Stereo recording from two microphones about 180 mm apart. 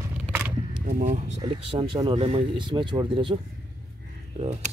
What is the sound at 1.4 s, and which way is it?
Speech, 30° right (ahead or behind).